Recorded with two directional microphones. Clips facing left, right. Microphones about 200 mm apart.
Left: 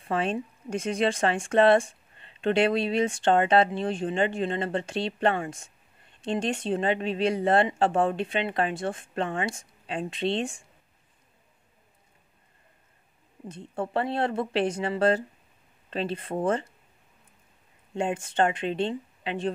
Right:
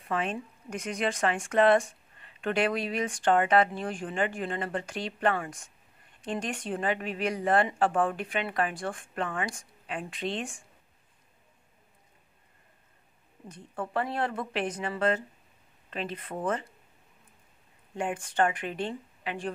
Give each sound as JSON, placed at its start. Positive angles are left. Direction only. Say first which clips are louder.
{"t": 0.1, "sound": "speech", "louder": "left 4 dB", "side_deg": 30}
{"t": 13.5, "sound": "speech", "louder": "left 5 dB", "side_deg": 25}
{"t": 17.9, "sound": "speech", "louder": "left 3 dB", "side_deg": 25}